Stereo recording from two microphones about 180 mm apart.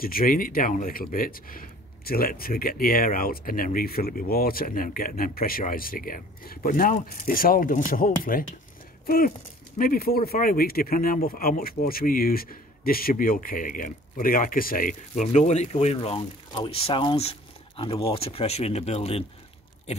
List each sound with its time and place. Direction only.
0.0 s speech: 55° left (ahead or behind); by 19.2 s 35° left (ahead or behind)